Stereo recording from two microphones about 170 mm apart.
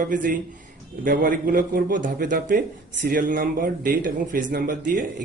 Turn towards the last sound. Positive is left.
turn(degrees=-55)  # may be behind; listen again after turning